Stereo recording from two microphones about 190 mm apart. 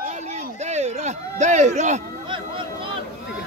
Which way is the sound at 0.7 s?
35° right (ahead or behind).